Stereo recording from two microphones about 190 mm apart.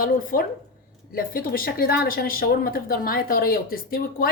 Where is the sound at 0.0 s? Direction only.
45° left (ahead or behind).